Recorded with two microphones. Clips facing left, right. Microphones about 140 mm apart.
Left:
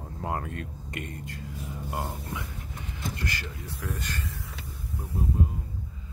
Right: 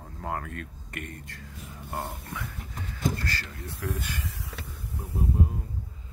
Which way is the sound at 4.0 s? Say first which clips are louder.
Even; 10° right (ahead or behind).